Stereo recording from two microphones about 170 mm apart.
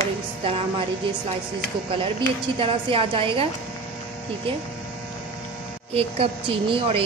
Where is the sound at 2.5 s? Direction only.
30° right (ahead or behind).